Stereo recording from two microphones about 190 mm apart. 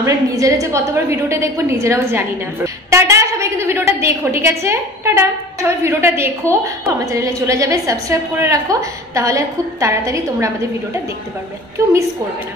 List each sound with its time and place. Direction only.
0.0 s a woman's voice: 15° right (ahead or behind)
11.8 s a woman's voice: 15° right (ahead or behind)